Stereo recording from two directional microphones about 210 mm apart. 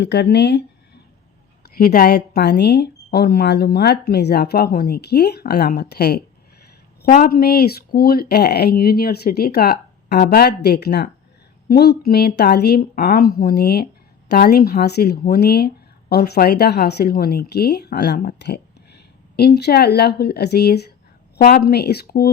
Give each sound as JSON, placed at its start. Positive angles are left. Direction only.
{"t": 0.0, "sound": "speech", "side_deg": 55}
{"t": 1.6, "sound": "a woman's voice", "side_deg": 45}